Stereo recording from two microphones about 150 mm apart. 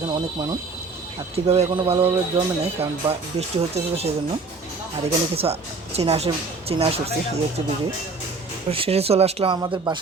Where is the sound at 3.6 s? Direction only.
40° right (ahead or behind).